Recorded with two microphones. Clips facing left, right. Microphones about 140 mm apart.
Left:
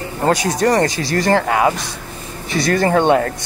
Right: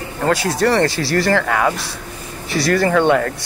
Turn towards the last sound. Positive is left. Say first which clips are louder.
# left 1 dB
turn(degrees=25)  # may be behind; listen again after turning